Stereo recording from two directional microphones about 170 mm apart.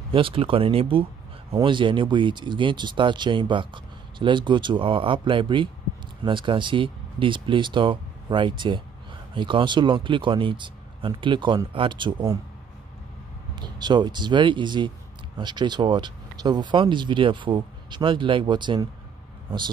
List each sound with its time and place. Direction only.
0.1 s speech: 30° right (ahead or behind)
13.6 s speech: 25° right (ahead or behind)